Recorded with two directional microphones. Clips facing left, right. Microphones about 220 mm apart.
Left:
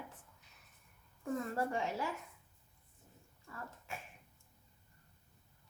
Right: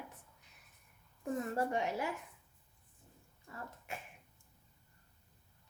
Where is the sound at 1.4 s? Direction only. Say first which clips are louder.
Right 2 dB; 20° right (ahead or behind).